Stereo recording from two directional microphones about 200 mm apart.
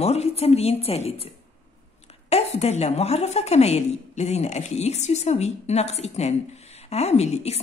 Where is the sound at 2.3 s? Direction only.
30° left (ahead or behind).